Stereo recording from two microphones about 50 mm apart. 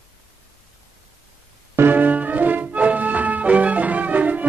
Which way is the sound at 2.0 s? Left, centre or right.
Right.